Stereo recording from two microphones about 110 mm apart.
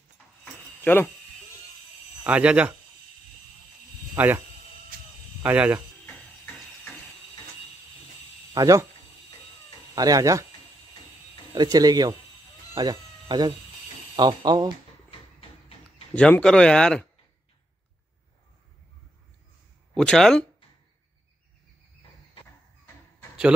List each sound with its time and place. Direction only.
0.8 s speech: 15° left (ahead or behind)
2.2 s speech: 10° right (ahead or behind)
4.2 s speech: 15° right (ahead or behind)
5.4 s speech: 15° right (ahead or behind)
8.5 s speech: 30° right (ahead or behind)
9.9 s speech: 35° right (ahead or behind)
11.5 s speech: 35° right (ahead or behind)
12.7 s a sound: 40° right (ahead or behind)
14.1 s speech: 40° right (ahead or behind)
16.2 s speech: 10° left (ahead or behind)
19.9 s speech: 5° left (ahead or behind)